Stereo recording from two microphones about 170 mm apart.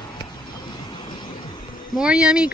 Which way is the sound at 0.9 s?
25° left (ahead or behind).